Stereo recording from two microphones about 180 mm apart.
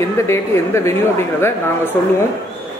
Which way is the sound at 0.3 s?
15° left (ahead or behind).